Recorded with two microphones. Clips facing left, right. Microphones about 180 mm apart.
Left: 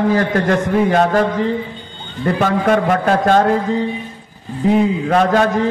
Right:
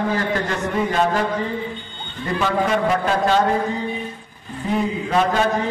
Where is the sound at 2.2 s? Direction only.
50° left (ahead or behind).